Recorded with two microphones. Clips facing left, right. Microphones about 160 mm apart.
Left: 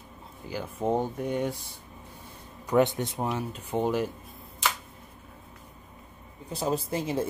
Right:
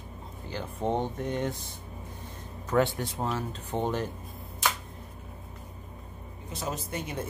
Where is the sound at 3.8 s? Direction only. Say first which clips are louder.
Left 3 dB; 5° left (ahead or behind).